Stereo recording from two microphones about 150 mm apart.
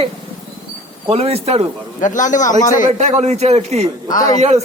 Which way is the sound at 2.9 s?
50° right (ahead or behind).